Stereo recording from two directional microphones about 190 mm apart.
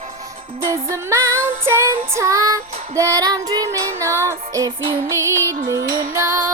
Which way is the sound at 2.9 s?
15° right (ahead or behind).